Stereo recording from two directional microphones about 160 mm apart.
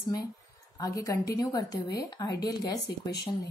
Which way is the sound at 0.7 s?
20° left (ahead or behind).